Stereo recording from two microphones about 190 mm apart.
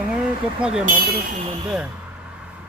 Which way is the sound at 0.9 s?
50° right (ahead or behind).